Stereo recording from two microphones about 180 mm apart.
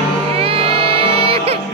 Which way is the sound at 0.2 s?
30° right (ahead or behind).